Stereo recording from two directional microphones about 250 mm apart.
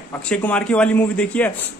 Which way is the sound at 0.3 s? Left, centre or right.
Centre.